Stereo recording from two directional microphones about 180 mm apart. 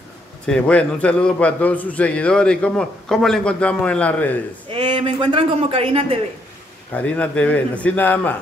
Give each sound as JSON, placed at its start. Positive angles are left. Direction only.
{"t": 0.5, "sound": "a man's voice", "side_deg": 5}
{"t": 4.6, "sound": "speech", "side_deg": -30}
{"t": 6.9, "sound": "a man's voice", "side_deg": 10}